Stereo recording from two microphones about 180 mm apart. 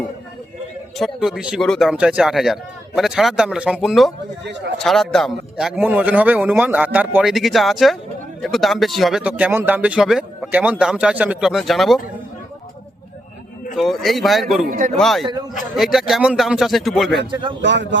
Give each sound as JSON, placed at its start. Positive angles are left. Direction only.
{"t": 0.9, "sound": "speech", "side_deg": 0}
{"t": 4.4, "sound": "speech", "side_deg": -70}
{"t": 4.8, "sound": "speech", "side_deg": 0}
{"t": 13.7, "sound": "speech", "side_deg": 0}
{"t": 14.7, "sound": "speech", "side_deg": -45}
{"t": 14.9, "sound": "speech", "side_deg": 0}
{"t": 17.6, "sound": "speech", "side_deg": -80}